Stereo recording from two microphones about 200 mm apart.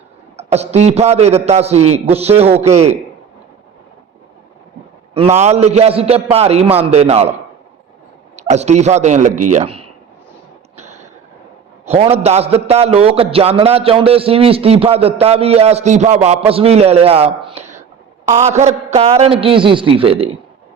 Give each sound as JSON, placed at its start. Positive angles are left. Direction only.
{"t": 0.3, "sound": "a man's voice", "side_deg": -30}
{"t": 5.1, "sound": "a man's voice", "side_deg": -30}
{"t": 8.4, "sound": "a man's voice", "side_deg": -35}
{"t": 10.8, "sound": "a sound", "side_deg": -35}
{"t": 11.9, "sound": "a man's voice", "side_deg": -30}